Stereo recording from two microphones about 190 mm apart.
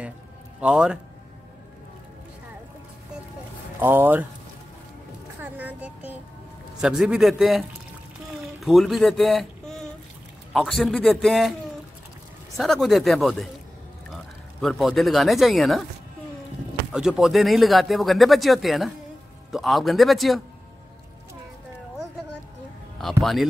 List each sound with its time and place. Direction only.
0.6 s speech: 5° right (ahead or behind)
3.8 s speech: 10° right (ahead or behind)
5.4 s music: 10° right (ahead or behind)
6.8 s speech: 5° right (ahead or behind)
8.4 s a sound: centre (ahead or behind)
10.5 s speech: centre (ahead or behind)
12.5 s speech: centre (ahead or behind)
16.9 s speech: 5° right (ahead or behind)
22.9 s speech: centre (ahead or behind)